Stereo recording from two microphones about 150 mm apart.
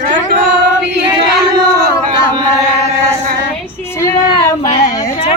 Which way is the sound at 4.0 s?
25° left (ahead or behind).